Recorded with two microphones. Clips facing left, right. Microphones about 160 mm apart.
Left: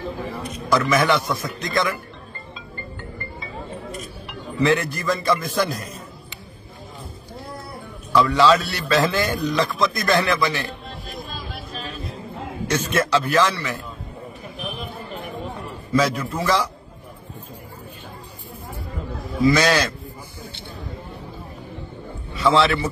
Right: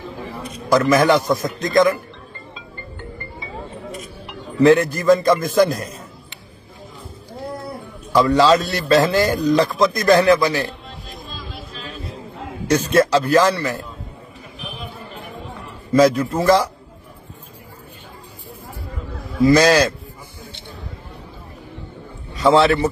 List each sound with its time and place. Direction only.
0.7 s speech: 40° right (ahead or behind)
4.6 s speech: 40° right (ahead or behind)
8.1 s speech: 40° right (ahead or behind)
12.6 s speech: 35° right (ahead or behind)
16.3 s speech: 40° right (ahead or behind)
19.4 s speech: 40° right (ahead or behind)
22.4 s a man's voice: 40° right (ahead or behind)